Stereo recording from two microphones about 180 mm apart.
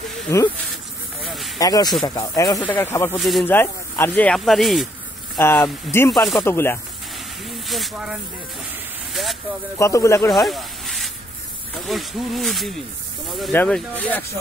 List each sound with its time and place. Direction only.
0.3 s speech: 15° left (ahead or behind)
1.2 s a sound: centre (ahead or behind)
1.6 s speech: 20° left (ahead or behind)
3.2 s speech: centre (ahead or behind)
3.4 s speech: 10° left (ahead or behind)
5.4 s speech: 15° left (ahead or behind)
6.1 s speech: centre (ahead or behind)
6.4 s speech: 15° left (ahead or behind)
7.6 s speech: centre (ahead or behind)
9.1 s a sound: centre (ahead or behind)
9.8 s speech: 15° left (ahead or behind)
10.3 s snake: centre (ahead or behind)
11.8 s speech: centre (ahead or behind)